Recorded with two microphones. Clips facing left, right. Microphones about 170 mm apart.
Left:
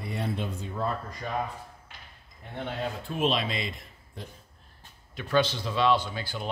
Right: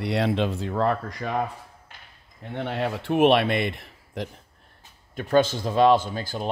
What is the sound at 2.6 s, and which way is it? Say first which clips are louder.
Speech: right 6 dB; 70° right (ahead or behind).